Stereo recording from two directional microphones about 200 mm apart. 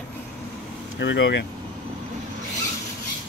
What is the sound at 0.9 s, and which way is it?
Speech, 65° left (ahead or behind).